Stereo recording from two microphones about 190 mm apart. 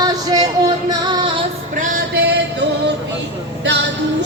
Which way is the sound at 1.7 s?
50° right (ahead or behind).